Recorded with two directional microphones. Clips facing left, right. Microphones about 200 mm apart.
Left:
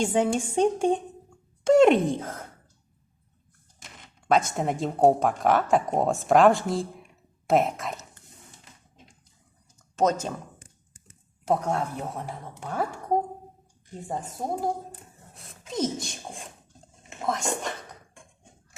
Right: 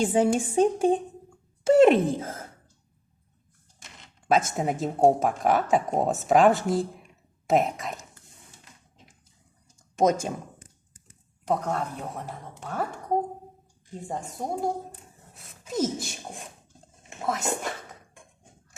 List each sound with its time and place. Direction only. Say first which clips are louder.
0.0 s speech: right 2 dB; 5° right (ahead or behind)
4.5 s speech: even; 5° right (ahead or behind)
9.7 s a sound: right 1 dB; 10° right (ahead or behind)
11.4 s a woman's voice: left 2 dB; 10° left (ahead or behind)
14.1 s speech: left 1 dB; centre (ahead or behind)